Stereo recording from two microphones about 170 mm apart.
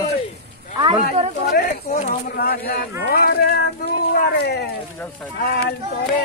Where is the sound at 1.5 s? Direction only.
55° left (ahead or behind); by 4.7 s 70° left (ahead or behind).